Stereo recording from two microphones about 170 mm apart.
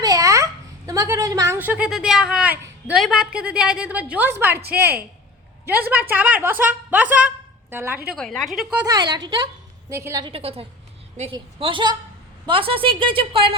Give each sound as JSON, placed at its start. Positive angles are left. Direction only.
{"t": 0.0, "sound": "a sound", "side_deg": -20}
{"t": 3.0, "sound": "a woman's voice", "side_deg": -5}
{"t": 8.9, "sound": "a woman's voice", "side_deg": -25}
{"t": 10.2, "sound": "a woman's voice", "side_deg": -35}